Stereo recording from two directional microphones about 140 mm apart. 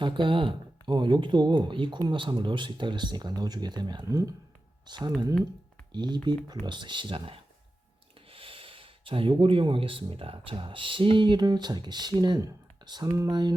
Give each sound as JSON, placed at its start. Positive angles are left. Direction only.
{"t": 0.0, "sound": "speech", "side_deg": -35}